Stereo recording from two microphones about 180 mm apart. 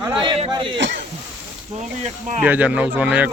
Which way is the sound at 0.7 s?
90° right.